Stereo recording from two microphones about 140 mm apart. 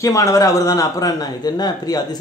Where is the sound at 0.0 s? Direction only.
20° left (ahead or behind).